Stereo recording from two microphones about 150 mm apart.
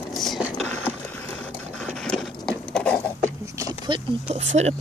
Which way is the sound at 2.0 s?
5° left (ahead or behind).